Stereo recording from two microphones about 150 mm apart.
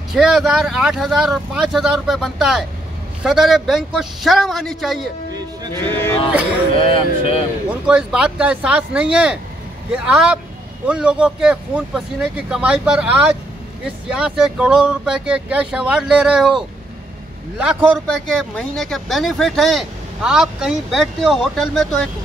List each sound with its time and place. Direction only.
0.1 s speech: centre (ahead or behind)
5.3 s music: 25° right (ahead or behind)
5.9 s a sound: 15° left (ahead or behind)
6.8 s speech: 35° left (ahead or behind)
7.8 s speech: 5° right (ahead or behind)
14.1 s speech: 5° right (ahead or behind)
18.0 s speech: 5° left (ahead or behind)